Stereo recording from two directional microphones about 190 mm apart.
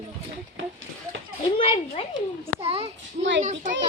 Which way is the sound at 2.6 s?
30° right (ahead or behind).